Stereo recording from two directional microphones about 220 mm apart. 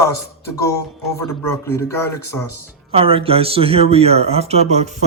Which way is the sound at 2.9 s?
25° right (ahead or behind).